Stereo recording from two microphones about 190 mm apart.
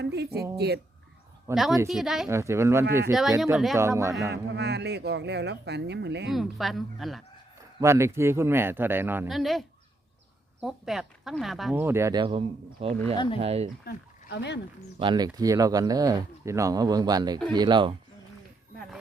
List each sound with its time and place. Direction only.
0.0 s a woman's voice: 60° right (ahead or behind)
1.5 s speech: 15° right (ahead or behind)
1.9 s speech: centre (ahead or behind)
2.3 s speech: 15° right (ahead or behind)
3.1 s speech: centre (ahead or behind)
3.8 s speech: 15° right (ahead or behind)
4.3 s speech: 60° right (ahead or behind)
6.2 s speech: centre (ahead or behind)
7.8 s speech: 15° right (ahead or behind)
9.3 s speech: centre (ahead or behind)
11.8 s speech: 15° right (ahead or behind); by 13.7 s 30° right (ahead or behind)
13.8 s speech: 65° left (ahead or behind)
14.9 s speech: 25° right (ahead or behind)